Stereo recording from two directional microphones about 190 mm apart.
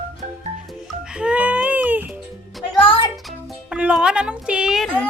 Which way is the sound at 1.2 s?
5° right (ahead or behind).